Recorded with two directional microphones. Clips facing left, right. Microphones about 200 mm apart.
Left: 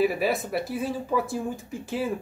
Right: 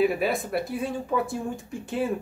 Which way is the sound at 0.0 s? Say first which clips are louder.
Even; centre (ahead or behind).